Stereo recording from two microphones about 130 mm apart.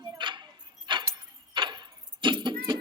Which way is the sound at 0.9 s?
35° right (ahead or behind).